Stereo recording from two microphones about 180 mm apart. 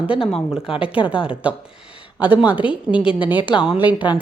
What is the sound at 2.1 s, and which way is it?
Speech, 25° left (ahead or behind).